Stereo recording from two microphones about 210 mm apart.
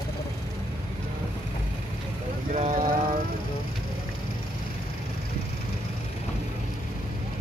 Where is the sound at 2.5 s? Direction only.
35° right (ahead or behind).